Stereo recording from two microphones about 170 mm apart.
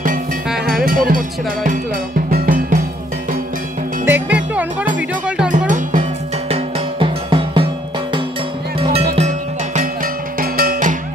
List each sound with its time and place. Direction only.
0.8 s speech: 55° right (ahead or behind)
2.3 s music: 55° right (ahead or behind)
4.0 s music: 10° right (ahead or behind)
4.9 s speech: 5° right (ahead or behind)
5.7 s music: 50° right (ahead or behind)
6.5 s music: 30° right (ahead or behind)
8.7 s music: 35° right (ahead or behind)
10.4 s music: 60° right (ahead or behind)